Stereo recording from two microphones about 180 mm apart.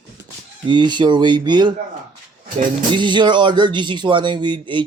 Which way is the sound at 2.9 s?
25° right (ahead or behind).